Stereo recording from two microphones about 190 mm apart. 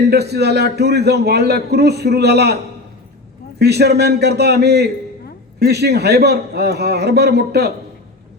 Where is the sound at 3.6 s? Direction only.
60° right (ahead or behind).